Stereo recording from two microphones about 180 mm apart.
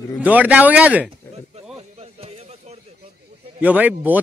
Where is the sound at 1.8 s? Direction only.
35° right (ahead or behind).